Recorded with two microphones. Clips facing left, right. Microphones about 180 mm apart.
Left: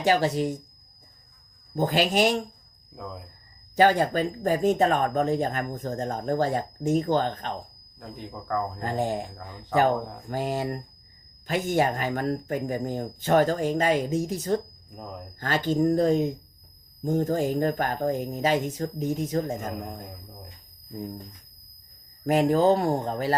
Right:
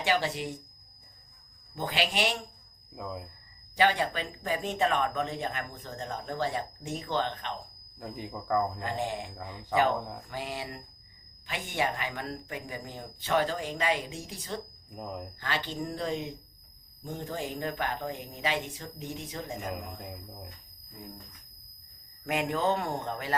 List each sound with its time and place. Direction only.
0.0 s speech: 40° left (ahead or behind)
1.7 s speech: 45° left (ahead or behind)
2.9 s speech: 5° right (ahead or behind)
3.8 s speech: 45° left (ahead or behind)
7.9 s speech: 5° right (ahead or behind)
8.8 s speech: 45° left (ahead or behind)
9.5 s speech: 10° right (ahead or behind)
10.2 s speech: 45° left (ahead or behind)